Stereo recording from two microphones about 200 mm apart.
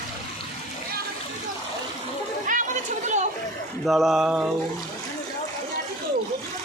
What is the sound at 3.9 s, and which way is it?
Speech, centre (ahead or behind).